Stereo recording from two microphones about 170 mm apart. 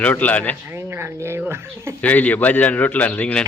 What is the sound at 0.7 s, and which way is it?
Speech, 15° right (ahead or behind).